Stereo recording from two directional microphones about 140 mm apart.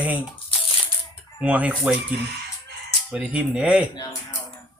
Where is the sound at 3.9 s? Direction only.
30° left (ahead or behind).